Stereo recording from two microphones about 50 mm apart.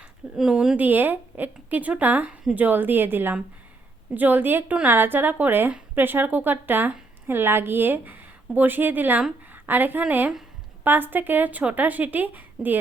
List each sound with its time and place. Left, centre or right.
0.3 s speech: centre
0.8 s a woman's voice: right
9.5 s a sound: right
10.0 s speech: right